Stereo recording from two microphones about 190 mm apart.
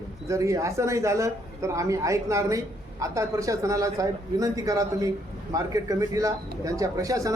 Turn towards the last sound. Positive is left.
turn(degrees=-15)  # may be behind; listen again after turning